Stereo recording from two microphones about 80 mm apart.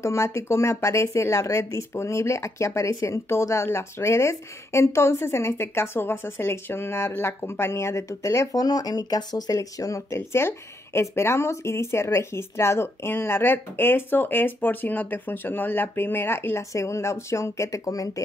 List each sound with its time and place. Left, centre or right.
0.0 s speech: left